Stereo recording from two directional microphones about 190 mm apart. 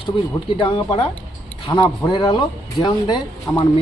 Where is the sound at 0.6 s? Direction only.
25° left (ahead or behind).